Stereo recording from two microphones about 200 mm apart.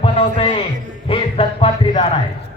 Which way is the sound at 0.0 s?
25° left (ahead or behind).